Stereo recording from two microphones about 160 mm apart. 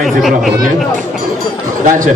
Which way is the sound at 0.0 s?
Centre (ahead or behind).